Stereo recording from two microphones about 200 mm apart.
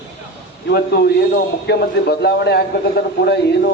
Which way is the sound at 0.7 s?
55° left (ahead or behind).